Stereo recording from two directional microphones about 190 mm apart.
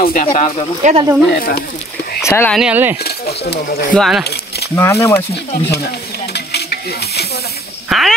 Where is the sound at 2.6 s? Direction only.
10° right (ahead or behind).